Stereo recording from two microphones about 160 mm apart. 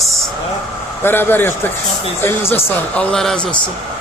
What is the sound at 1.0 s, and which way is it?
Speech, 15° left (ahead or behind).